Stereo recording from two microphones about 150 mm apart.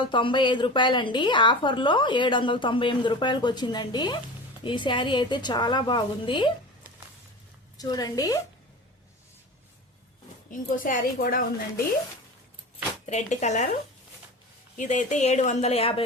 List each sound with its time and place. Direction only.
0.0 s a woman's voice: 35° left (ahead or behind)
7.8 s a woman's voice: 25° left (ahead or behind)
10.5 s a woman's voice: 65° left (ahead or behind)
13.1 s speech: 50° left (ahead or behind)
14.8 s speech: 55° left (ahead or behind)